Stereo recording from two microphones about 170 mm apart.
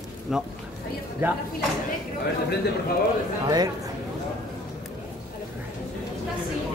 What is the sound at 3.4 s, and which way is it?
Speech, 20° right (ahead or behind).